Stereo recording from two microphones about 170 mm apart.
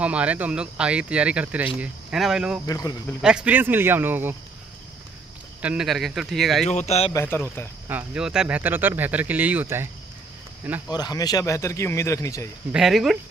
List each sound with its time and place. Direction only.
0.0 s speech: 5° right (ahead or behind)
2.6 s speech: 20° left (ahead or behind)
3.2 s speech: 5° right (ahead or behind)
5.6 s speech: 5° right (ahead or behind)
6.7 s speech: 40° left (ahead or behind)
7.2 s speech: 10° left (ahead or behind)
7.9 s speech: 5° right (ahead or behind)
10.9 s speech: 25° left (ahead or behind)
12.7 s speech: centre (ahead or behind)